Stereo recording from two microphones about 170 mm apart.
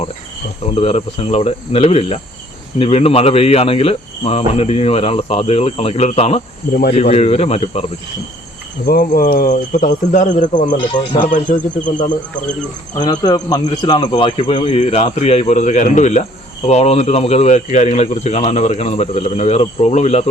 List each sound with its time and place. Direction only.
0.6 s cricket: 35° left (ahead or behind)
8.9 s speech: 60° left (ahead or behind)
10.9 s a man's voice: 25° left (ahead or behind)
11.3 s speech: 50° left (ahead or behind)
13.0 s a man's voice: 20° left (ahead or behind)
13.9 s cricket: 30° left (ahead or behind)